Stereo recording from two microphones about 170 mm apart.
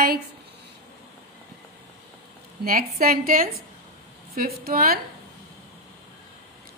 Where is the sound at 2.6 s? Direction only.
60° right (ahead or behind).